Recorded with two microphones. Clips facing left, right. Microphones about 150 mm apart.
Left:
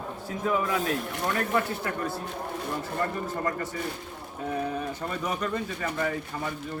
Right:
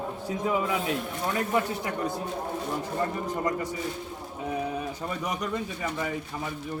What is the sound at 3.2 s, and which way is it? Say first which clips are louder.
Speech: right 1 dB; 15° right (ahead or behind).